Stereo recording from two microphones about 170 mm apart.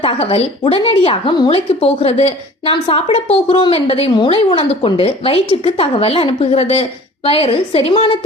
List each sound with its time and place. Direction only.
0.0 s speech: 35° left (ahead or behind)